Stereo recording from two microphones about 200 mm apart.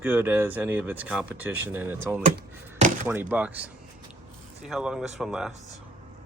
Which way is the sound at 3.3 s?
5° right (ahead or behind).